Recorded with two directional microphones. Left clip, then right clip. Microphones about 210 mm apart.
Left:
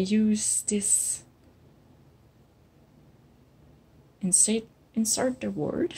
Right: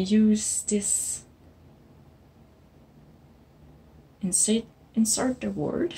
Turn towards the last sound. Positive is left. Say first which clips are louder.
# right 1 dB
turn(degrees=30)  # may be behind; listen again after turning